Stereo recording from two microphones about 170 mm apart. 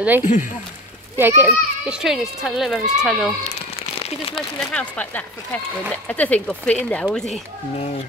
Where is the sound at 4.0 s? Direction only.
35° left (ahead or behind).